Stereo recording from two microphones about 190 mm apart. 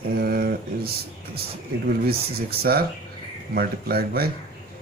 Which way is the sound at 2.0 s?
55° right (ahead or behind).